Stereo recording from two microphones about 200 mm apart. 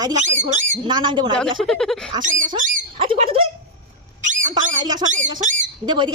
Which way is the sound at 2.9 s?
25° right (ahead or behind).